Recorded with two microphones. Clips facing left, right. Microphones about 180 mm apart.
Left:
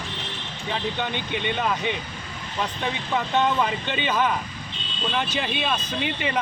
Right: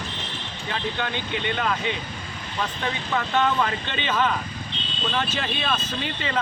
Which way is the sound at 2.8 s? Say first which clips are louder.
Left 1 dB; 15° left (ahead or behind).